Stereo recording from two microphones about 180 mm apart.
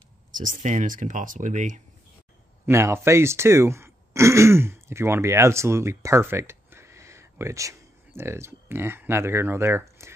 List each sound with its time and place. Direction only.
0.3 s speech: 45° right (ahead or behind)
2.6 s speech: 15° right (ahead or behind)